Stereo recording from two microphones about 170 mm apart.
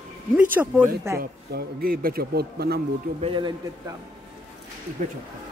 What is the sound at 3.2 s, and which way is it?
Speech, 30° right (ahead or behind).